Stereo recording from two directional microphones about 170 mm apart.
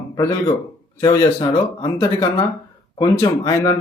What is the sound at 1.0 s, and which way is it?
A man's voice, 20° left (ahead or behind).